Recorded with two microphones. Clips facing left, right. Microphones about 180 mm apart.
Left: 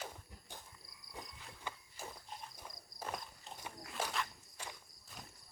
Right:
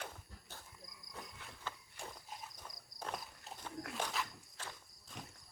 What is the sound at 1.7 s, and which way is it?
Walk, 10° left (ahead or behind).